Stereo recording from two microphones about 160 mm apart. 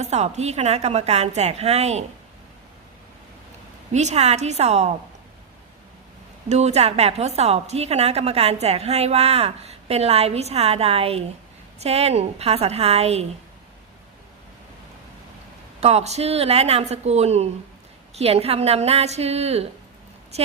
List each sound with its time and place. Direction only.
0.0 s a woman's voice: 45° right (ahead or behind)
3.9 s a woman's voice: 45° right (ahead or behind)
6.5 s a woman's voice: 45° right (ahead or behind)
15.8 s a woman's voice: 40° right (ahead or behind)